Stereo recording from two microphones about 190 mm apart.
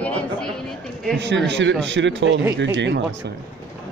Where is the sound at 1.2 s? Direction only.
70° right (ahead or behind).